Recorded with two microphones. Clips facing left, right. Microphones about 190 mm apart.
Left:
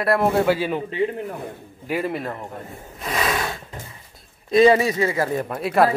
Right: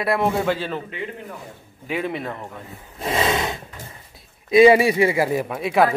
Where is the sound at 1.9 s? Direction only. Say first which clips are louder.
Left 1 dB; 5° left (ahead or behind).